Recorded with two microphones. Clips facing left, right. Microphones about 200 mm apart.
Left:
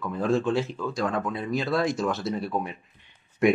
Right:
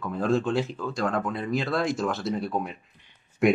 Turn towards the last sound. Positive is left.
turn(degrees=0)  # may be behind; listen again after turning